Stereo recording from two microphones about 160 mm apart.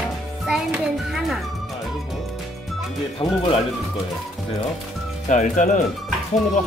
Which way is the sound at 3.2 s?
35° left (ahead or behind).